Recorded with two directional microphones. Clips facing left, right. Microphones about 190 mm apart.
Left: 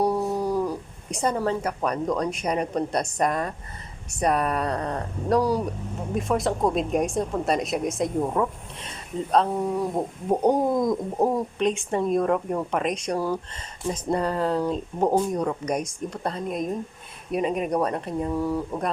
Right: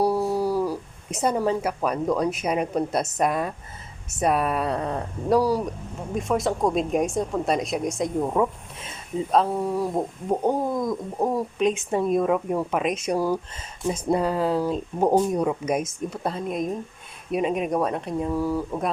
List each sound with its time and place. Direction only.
0.0 s speech: 5° right (ahead or behind)
10.2 s bird: 15° left (ahead or behind)
11.3 s speech: 5° right (ahead or behind)